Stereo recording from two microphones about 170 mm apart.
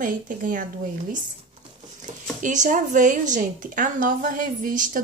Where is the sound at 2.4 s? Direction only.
45° right (ahead or behind).